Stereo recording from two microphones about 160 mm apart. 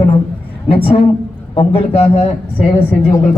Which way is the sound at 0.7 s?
35° left (ahead or behind).